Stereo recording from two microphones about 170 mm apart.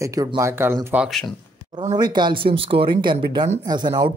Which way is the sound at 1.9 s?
25° right (ahead or behind).